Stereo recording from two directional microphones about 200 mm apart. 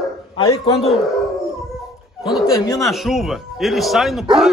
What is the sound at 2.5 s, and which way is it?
Speech, 20° left (ahead or behind).